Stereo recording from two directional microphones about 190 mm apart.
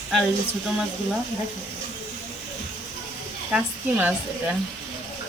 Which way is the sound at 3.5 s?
5° right (ahead or behind).